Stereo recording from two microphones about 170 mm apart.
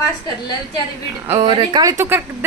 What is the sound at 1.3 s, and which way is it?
Speech, 25° right (ahead or behind).